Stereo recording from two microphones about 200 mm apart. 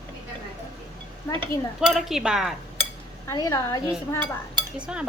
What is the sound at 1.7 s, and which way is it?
Speech, centre (ahead or behind).